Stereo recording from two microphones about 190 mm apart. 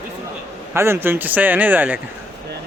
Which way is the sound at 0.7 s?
15° right (ahead or behind).